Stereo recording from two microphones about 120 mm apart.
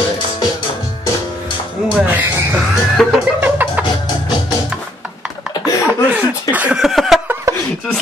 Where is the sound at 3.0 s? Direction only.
Centre (ahead or behind).